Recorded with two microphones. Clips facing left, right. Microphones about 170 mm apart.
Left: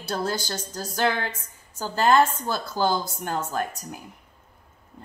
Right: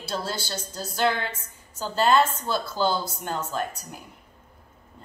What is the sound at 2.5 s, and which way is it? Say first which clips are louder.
A woman's voice: even; 45° left (ahead or behind).